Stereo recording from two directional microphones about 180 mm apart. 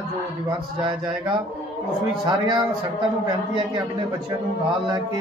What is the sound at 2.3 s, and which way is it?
Speech, 25° right (ahead or behind).